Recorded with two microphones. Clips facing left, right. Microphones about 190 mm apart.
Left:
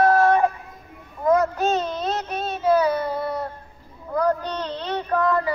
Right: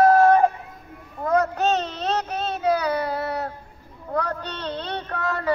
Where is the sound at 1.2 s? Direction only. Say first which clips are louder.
Left 2 dB; 65° right (ahead or behind).